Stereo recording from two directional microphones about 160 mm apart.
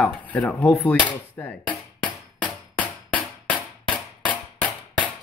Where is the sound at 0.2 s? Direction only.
10° left (ahead or behind).